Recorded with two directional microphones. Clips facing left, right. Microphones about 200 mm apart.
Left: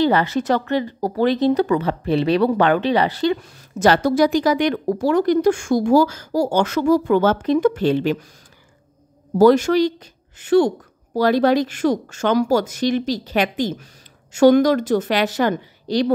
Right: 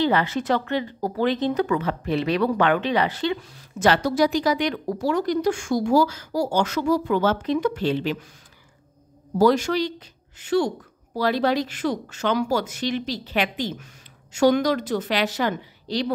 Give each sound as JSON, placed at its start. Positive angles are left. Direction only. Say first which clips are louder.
{"t": 0.0, "sound": "speech", "louder": "left 4 dB", "side_deg": 40}
{"t": 9.4, "sound": "speech", "louder": "left 6 dB", "side_deg": 50}